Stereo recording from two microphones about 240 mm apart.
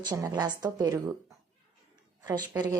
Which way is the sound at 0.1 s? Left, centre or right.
Centre.